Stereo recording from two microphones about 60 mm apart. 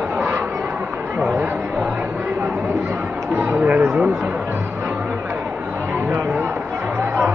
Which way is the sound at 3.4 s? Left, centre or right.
Right.